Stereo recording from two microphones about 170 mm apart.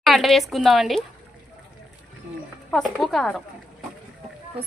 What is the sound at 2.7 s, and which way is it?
Speech, centre (ahead or behind).